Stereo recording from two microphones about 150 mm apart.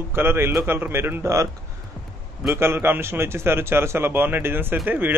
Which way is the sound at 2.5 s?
15° right (ahead or behind).